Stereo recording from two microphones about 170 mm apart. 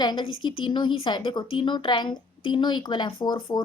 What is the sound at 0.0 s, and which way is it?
A woman's voice, 25° left (ahead or behind).